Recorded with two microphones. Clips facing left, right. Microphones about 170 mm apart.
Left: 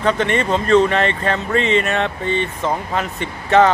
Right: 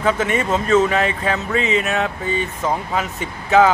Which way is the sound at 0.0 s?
5° right (ahead or behind).